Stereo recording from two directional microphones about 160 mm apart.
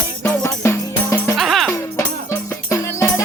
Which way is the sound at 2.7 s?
20° left (ahead or behind).